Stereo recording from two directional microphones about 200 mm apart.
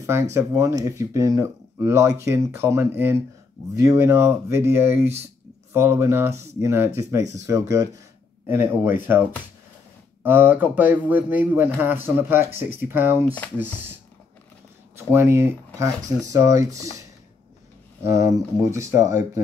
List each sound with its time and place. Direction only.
0.0 s speech: 15° right (ahead or behind)
10.2 s speech: 10° right (ahead or behind)
13.2 s speech: 10° left (ahead or behind)
15.0 s speech: 10° right (ahead or behind)
18.0 s speech: 15° right (ahead or behind)